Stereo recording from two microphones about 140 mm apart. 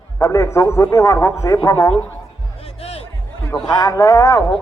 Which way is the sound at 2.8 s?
45° left (ahead or behind).